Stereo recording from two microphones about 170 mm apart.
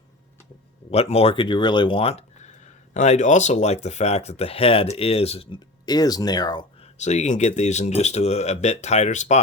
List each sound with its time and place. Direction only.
0.9 s speech: 35° left (ahead or behind)
7.0 s speech: 45° left (ahead or behind)